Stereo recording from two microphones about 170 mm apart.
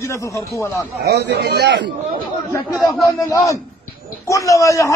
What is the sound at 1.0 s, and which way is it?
Speech, 75° right (ahead or behind).